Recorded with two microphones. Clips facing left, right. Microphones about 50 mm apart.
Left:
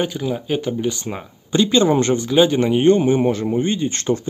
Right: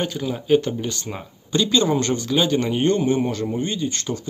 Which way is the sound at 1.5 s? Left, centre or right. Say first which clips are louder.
Left 4 dB; left.